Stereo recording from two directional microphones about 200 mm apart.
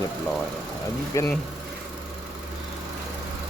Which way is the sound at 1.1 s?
15° left (ahead or behind).